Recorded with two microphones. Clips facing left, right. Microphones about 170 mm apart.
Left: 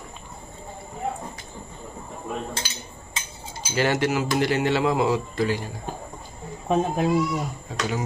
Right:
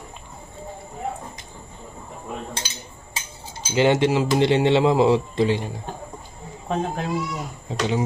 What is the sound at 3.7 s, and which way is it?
Speech, 20° right (ahead or behind).